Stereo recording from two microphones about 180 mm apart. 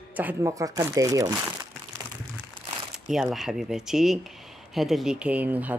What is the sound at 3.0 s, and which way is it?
Speech, centre (ahead or behind).